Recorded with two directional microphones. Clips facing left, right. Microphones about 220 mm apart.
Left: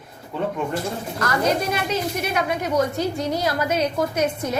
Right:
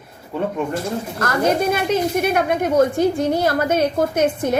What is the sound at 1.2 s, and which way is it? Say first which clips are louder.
A woman's voice: right 3 dB; 50° right (ahead or behind).